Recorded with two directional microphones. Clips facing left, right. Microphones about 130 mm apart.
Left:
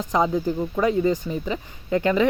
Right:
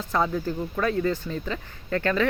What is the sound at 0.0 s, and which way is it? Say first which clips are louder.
Speech: left 4 dB; 15° left (ahead or behind).